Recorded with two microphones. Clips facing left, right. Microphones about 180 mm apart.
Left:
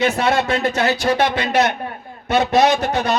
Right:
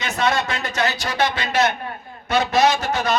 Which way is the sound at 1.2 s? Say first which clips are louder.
Right 2 dB; 55° left (ahead or behind).